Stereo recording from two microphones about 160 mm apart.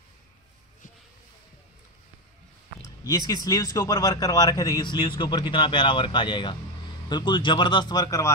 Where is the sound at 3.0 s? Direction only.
20° left (ahead or behind).